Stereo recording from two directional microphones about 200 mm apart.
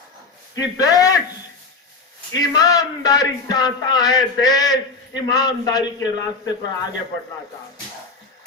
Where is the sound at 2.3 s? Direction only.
20° left (ahead or behind).